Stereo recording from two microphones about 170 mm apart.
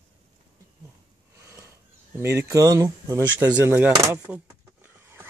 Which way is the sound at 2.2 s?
15° right (ahead or behind).